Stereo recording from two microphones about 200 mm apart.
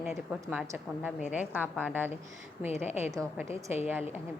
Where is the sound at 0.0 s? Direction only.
10° right (ahead or behind).